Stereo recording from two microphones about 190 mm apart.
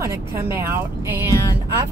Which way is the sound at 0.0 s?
15° right (ahead or behind).